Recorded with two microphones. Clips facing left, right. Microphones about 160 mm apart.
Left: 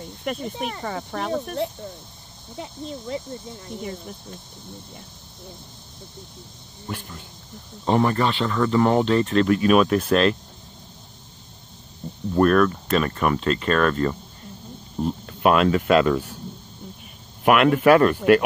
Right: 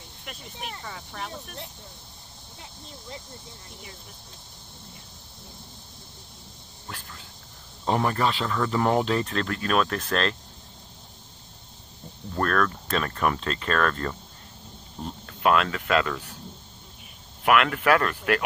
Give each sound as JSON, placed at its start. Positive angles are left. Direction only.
{"t": 0.2, "sound": "speech", "side_deg": 55}
{"t": 2.6, "sound": "speech", "side_deg": 90}
{"t": 7.8, "sound": "speech", "side_deg": 0}
{"t": 9.5, "sound": "speech", "side_deg": 15}
{"t": 12.4, "sound": "speech", "side_deg": 10}
{"t": 15.2, "sound": "speech", "side_deg": 20}
{"t": 17.4, "sound": "speech", "side_deg": 20}